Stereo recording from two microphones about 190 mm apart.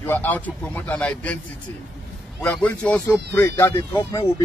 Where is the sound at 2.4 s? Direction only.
5° left (ahead or behind).